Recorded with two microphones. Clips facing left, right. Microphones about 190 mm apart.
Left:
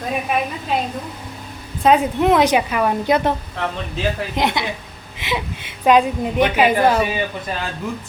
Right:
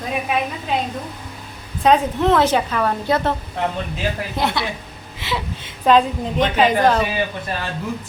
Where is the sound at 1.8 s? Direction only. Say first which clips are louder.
Left 1 dB; 10° left (ahead or behind).